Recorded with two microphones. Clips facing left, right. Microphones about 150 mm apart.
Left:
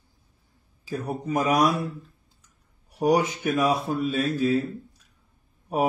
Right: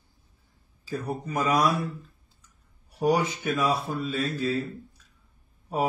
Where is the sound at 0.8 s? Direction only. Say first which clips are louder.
Left 2 dB; 20° left (ahead or behind).